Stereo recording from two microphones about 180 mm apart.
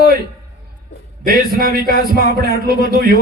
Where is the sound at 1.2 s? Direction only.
55° right (ahead or behind).